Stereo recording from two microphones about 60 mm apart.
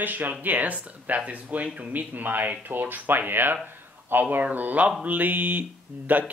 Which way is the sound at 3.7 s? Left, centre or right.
Right.